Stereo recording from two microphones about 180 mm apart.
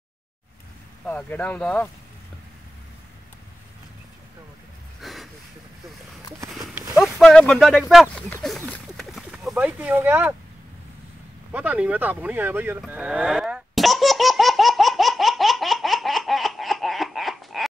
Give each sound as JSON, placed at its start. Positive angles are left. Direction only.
{"t": 1.0, "sound": "speech", "side_deg": 10}
{"t": 5.0, "sound": "a sound", "side_deg": 0}
{"t": 6.7, "sound": "run", "side_deg": -15}
{"t": 7.0, "sound": "speech", "side_deg": 0}
{"t": 8.9, "sound": "a sound", "side_deg": 0}
{"t": 11.5, "sound": "cattle", "side_deg": -10}